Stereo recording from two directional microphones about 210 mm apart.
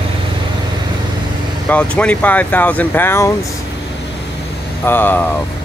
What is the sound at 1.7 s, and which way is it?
Speech, 5° left (ahead or behind).